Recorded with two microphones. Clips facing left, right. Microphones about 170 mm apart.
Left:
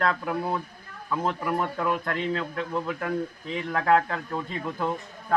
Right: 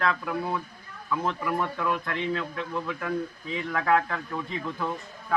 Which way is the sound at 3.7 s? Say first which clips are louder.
Left 2 dB; 30° left (ahead or behind).